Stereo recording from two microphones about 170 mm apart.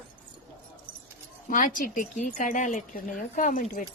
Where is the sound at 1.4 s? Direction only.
55° left (ahead or behind).